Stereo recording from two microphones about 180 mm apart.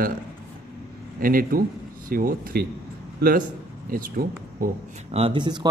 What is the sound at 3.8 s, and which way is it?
Speech, 50° right (ahead or behind).